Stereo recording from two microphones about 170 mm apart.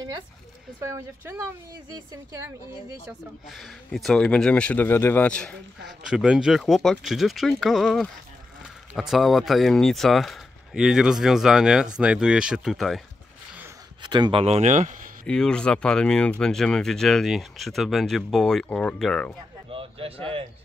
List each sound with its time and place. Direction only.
0.7 s speech: 15° right (ahead or behind)
3.1 s speech: centre (ahead or behind)
14.0 s speech: 25° right (ahead or behind); by 15.0 s 45° right (ahead or behind)
15.2 s speech: 5° left (ahead or behind)
19.7 s speech: 35° right (ahead or behind)